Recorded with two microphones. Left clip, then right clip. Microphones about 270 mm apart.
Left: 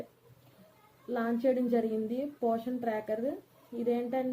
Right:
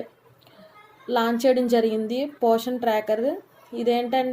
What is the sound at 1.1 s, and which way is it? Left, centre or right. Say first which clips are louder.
A woman's voice: right 10 dB; right.